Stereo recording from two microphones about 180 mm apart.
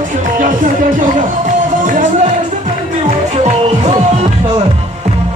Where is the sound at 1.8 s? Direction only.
45° right (ahead or behind).